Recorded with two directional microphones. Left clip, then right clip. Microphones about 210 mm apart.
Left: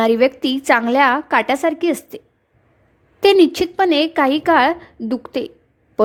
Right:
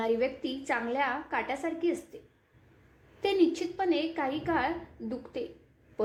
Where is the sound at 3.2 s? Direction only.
50° left (ahead or behind).